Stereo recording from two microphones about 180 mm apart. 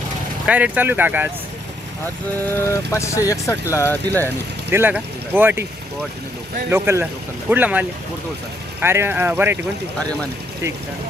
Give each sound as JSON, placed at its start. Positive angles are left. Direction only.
{"t": 0.4, "sound": "speech", "side_deg": -10}
{"t": 2.5, "sound": "speech", "side_deg": 15}
{"t": 4.7, "sound": "speech", "side_deg": -10}
{"t": 6.7, "sound": "speech", "side_deg": -15}
{"t": 10.0, "sound": "speech", "side_deg": 5}